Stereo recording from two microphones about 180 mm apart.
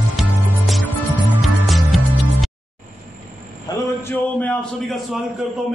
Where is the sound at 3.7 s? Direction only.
20° left (ahead or behind).